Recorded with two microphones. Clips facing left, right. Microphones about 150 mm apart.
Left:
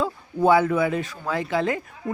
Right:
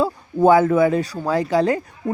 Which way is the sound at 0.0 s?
45° right (ahead or behind).